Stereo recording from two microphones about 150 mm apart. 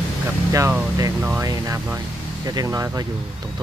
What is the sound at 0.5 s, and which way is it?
Speech, 20° right (ahead or behind).